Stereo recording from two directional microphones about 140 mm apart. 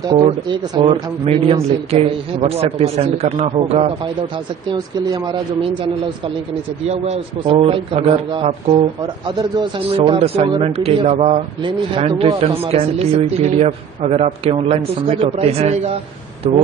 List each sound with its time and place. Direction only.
0.2 s speech: 35° right (ahead or behind)
4.6 s a man's voice: 30° right (ahead or behind)
6.9 s a man's voice: 45° right (ahead or behind)
9.3 s a man's voice: 30° right (ahead or behind)
9.8 s speech: 45° right (ahead or behind)
11.6 s a man's voice: 35° right (ahead or behind)